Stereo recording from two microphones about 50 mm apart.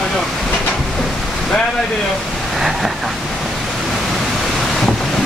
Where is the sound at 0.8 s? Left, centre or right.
Centre.